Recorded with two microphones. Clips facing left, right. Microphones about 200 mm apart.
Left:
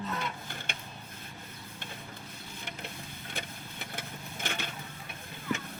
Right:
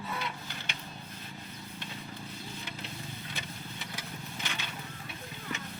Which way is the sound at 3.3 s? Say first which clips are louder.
Left 1 dB; 50° left (ahead or behind).